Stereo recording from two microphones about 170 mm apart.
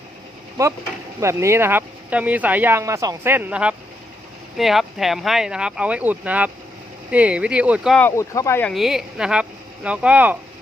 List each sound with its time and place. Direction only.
0.6 s speech: 20° right (ahead or behind)
7.9 s speech: 15° left (ahead or behind)
8.7 s speech: centre (ahead or behind)